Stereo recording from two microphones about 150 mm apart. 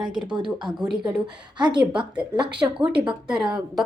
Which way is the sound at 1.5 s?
30° right (ahead or behind).